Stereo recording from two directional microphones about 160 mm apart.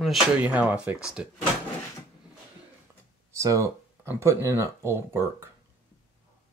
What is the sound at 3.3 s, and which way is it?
Speech, 20° right (ahead or behind).